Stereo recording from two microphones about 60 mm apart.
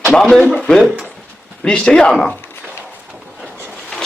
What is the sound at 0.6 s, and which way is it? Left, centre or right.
Speech, centre.